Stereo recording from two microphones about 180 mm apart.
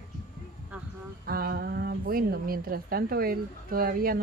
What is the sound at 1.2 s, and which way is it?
A woman's voice, 55° right (ahead or behind).